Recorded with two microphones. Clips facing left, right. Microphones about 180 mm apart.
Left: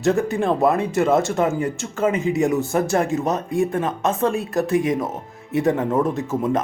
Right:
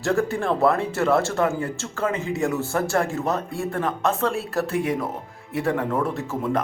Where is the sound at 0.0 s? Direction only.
20° left (ahead or behind).